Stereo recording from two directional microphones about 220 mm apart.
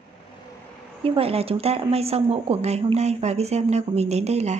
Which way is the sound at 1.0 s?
25° right (ahead or behind).